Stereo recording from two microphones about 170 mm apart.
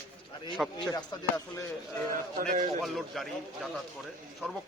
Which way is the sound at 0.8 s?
25° left (ahead or behind).